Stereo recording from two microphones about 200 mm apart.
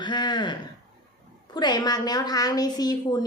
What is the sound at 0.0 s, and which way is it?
Speech, 20° left (ahead or behind).